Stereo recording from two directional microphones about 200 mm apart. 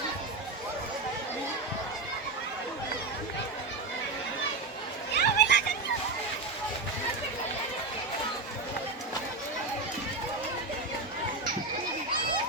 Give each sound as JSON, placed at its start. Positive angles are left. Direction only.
{"t": 5.1, "sound": "children playing", "side_deg": 55}